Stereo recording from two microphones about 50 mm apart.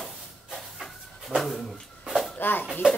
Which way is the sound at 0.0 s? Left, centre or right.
Centre.